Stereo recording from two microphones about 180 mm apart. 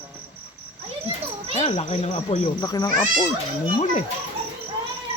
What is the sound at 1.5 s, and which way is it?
Speech, 35° left (ahead or behind).